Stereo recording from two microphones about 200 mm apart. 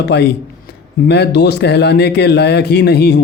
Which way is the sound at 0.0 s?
55° left (ahead or behind).